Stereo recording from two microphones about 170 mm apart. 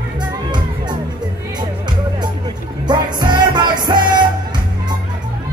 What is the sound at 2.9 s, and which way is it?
Music, 25° right (ahead or behind).